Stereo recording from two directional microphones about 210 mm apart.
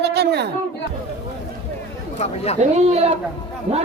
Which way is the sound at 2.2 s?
30° left (ahead or behind).